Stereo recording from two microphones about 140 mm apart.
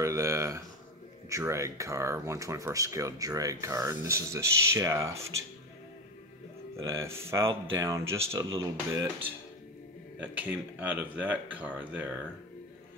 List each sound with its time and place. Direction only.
0.0 s a sound: 20° right (ahead or behind)
1.3 s speech: 20° right (ahead or behind)
6.8 s speech: 20° right (ahead or behind)